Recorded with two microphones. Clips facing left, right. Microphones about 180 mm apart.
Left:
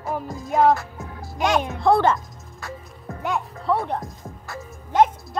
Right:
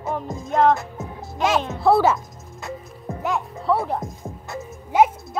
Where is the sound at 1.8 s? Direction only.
5° right (ahead or behind).